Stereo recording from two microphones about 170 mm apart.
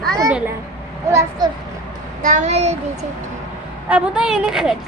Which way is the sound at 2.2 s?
45° right (ahead or behind).